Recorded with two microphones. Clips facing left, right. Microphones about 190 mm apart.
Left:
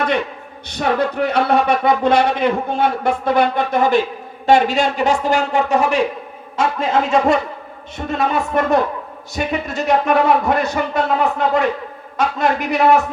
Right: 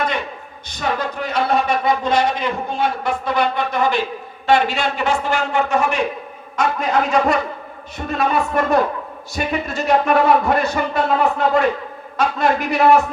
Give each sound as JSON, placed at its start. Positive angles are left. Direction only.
{"t": 0.7, "sound": "a man's voice", "side_deg": 60}